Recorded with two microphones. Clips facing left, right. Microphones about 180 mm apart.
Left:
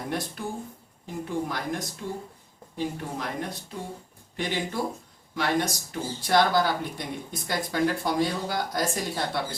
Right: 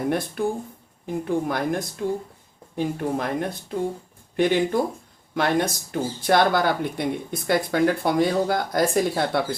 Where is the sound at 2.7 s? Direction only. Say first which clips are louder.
Right 7 dB; 55° right (ahead or behind).